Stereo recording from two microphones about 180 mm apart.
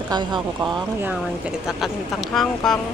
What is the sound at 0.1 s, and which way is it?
Speech, 25° right (ahead or behind).